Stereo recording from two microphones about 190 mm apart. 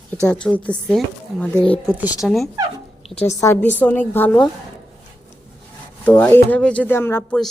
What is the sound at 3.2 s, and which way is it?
A woman's voice, 15° left (ahead or behind).